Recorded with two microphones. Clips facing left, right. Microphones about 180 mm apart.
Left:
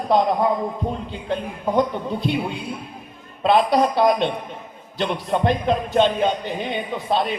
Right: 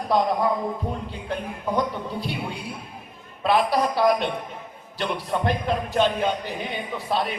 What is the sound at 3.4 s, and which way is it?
A man's voice, 25° left (ahead or behind).